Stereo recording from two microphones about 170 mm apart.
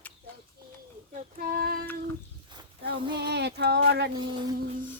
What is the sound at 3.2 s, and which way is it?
Speech, 75° right (ahead or behind).